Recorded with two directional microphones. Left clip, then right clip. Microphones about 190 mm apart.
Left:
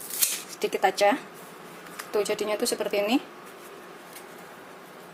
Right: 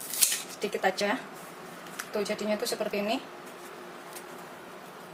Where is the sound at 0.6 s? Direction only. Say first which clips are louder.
Left 6 dB; 40° left (ahead or behind).